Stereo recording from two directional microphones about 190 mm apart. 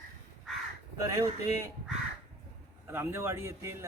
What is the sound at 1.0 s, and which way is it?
Speech, 15° right (ahead or behind).